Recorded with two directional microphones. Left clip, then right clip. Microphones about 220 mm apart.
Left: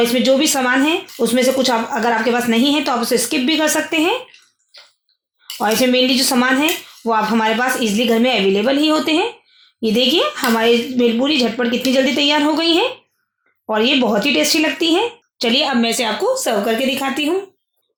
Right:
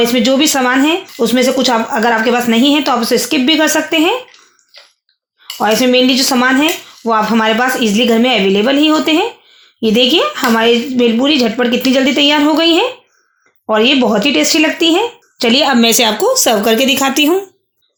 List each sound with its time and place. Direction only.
0.0 s speech: 25° right (ahead or behind)
5.5 s speech: 25° right (ahead or behind); by 17.3 s 40° right (ahead or behind)